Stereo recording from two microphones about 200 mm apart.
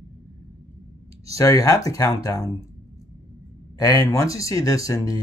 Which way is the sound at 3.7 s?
15° left (ahead or behind).